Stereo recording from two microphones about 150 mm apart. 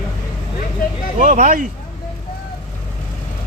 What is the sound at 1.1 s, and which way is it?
Speech, 60° right (ahead or behind).